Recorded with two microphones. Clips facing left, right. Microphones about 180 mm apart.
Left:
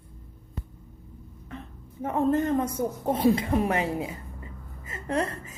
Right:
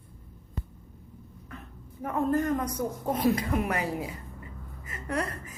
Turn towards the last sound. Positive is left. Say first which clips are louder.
# left 4 dB
turn(degrees=25)  # may be behind; listen again after turning